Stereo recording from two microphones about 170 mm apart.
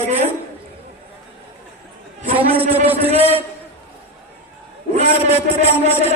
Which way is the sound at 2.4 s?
35° right (ahead or behind).